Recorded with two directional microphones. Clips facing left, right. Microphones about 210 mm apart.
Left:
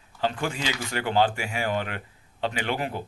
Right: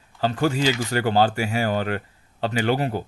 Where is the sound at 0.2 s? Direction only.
40° right (ahead or behind).